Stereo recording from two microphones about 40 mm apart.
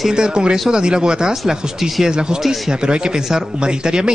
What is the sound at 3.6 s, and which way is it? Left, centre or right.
Speech, right.